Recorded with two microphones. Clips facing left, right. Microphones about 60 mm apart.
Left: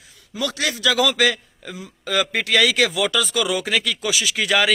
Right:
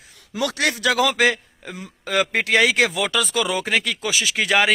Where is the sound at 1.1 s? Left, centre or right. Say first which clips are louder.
Right 1 dB; right.